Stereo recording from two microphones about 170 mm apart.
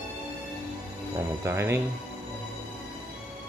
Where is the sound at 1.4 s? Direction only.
15° right (ahead or behind).